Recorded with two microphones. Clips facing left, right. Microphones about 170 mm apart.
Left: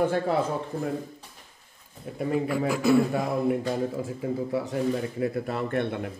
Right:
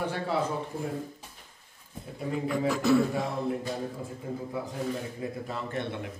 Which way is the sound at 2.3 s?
5° left (ahead or behind).